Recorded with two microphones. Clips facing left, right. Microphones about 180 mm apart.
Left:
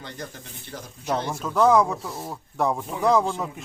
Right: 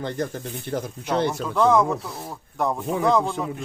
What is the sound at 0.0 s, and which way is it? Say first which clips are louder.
Speech: right 10 dB; 50° right (ahead or behind).